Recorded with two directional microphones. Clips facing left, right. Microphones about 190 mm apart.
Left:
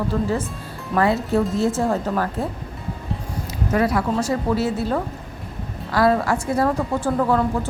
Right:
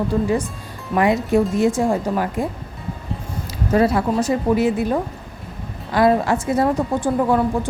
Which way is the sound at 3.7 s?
25° right (ahead or behind).